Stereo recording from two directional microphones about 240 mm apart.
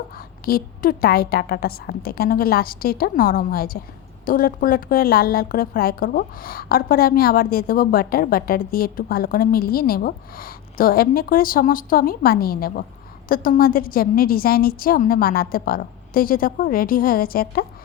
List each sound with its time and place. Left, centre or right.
0.4 s a woman's voice: left